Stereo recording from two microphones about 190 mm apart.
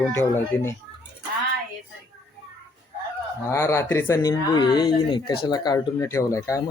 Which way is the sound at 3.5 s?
15° left (ahead or behind).